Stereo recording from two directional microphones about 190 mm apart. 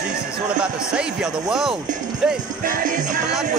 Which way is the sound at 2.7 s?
40° right (ahead or behind).